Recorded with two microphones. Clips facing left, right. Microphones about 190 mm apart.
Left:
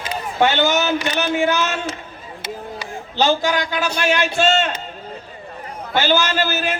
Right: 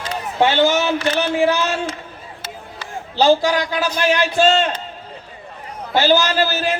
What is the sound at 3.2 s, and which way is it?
A man's voice, 35° right (ahead or behind).